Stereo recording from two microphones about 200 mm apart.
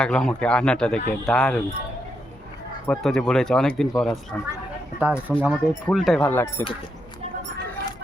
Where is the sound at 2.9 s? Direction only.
Centre (ahead or behind).